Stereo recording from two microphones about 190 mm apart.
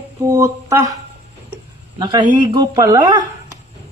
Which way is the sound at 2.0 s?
25° right (ahead or behind).